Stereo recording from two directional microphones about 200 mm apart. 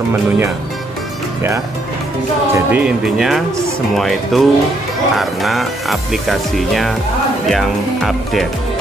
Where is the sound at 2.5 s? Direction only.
5° right (ahead or behind).